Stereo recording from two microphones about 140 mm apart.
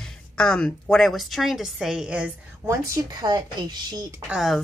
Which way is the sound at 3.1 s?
30° right (ahead or behind).